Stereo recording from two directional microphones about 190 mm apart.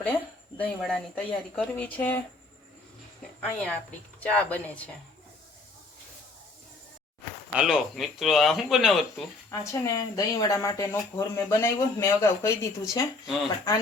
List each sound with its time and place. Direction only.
0.6 s speech: 5° left (ahead or behind)
3.4 s speech: 5° left (ahead or behind)
7.5 s speech: 5° right (ahead or behind)
9.5 s speech: 20° left (ahead or behind)